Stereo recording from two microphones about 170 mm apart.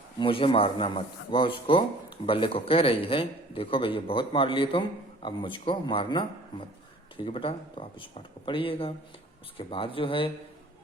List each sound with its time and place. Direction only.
0.2 s a man's voice: 30° left (ahead or behind)